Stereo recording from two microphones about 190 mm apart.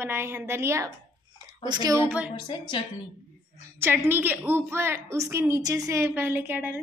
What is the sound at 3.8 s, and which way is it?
A woman's voice, 10° right (ahead or behind).